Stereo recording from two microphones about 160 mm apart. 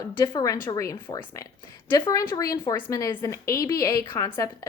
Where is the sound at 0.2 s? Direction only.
20° left (ahead or behind).